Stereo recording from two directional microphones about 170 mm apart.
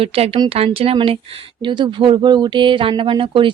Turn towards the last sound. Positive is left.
turn(degrees=-30)  # may be behind; listen again after turning